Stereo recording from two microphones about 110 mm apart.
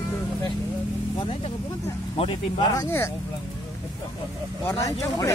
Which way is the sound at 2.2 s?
55° left (ahead or behind).